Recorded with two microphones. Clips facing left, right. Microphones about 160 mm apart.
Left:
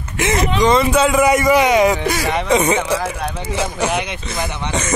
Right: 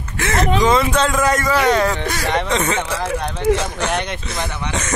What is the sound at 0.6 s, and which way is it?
A man's voice, centre (ahead or behind).